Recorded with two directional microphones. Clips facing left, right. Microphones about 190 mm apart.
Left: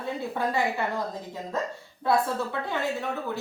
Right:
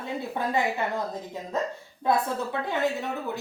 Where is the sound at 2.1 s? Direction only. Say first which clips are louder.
Even; 20° right (ahead or behind).